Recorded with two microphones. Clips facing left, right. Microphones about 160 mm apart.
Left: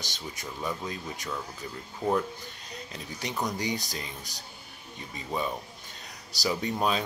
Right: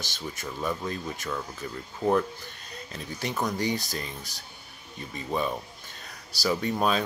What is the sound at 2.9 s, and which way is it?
Speech, 15° left (ahead or behind).